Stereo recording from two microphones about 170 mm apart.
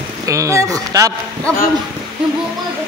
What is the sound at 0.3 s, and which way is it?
Speech, 20° right (ahead or behind).